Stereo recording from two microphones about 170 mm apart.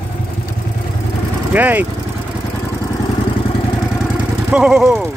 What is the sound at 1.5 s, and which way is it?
Speech, 10° right (ahead or behind).